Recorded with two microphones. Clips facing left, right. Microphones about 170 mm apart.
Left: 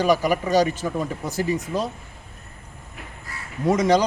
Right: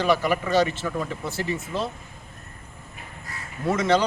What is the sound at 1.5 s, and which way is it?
Speech, 40° left (ahead or behind).